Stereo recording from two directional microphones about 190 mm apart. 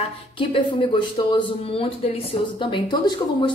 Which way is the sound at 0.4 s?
25° left (ahead or behind).